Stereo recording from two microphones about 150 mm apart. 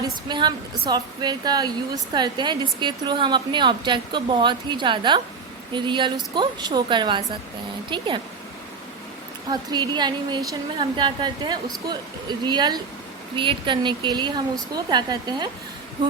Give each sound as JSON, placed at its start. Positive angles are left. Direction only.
{"t": 0.0, "sound": "speech", "side_deg": -30}
{"t": 9.5, "sound": "a woman's voice", "side_deg": -25}